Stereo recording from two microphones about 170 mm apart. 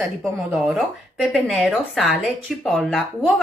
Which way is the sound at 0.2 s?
5° right (ahead or behind).